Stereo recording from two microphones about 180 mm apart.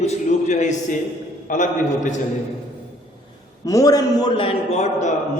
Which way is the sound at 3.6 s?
20° left (ahead or behind).